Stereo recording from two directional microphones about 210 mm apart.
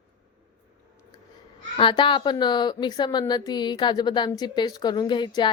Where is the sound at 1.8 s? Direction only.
25° left (ahead or behind).